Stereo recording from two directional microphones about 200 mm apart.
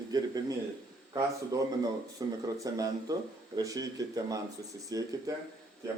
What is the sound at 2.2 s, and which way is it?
Speech, 20° right (ahead or behind).